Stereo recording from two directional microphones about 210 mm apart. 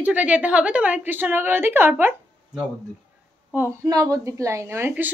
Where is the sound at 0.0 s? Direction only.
5° right (ahead or behind).